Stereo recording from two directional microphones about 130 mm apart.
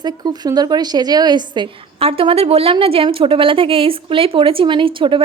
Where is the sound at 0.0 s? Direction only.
30° right (ahead or behind).